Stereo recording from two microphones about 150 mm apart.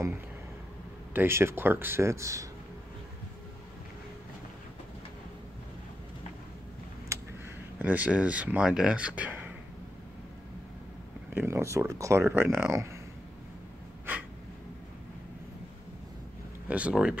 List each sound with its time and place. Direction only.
1.1 s speech: 15° right (ahead or behind)
7.1 s a sound: 20° right (ahead or behind)
7.8 s speech: 10° right (ahead or behind)
11.3 s speech: 15° right (ahead or behind)
16.6 s speech: 10° right (ahead or behind)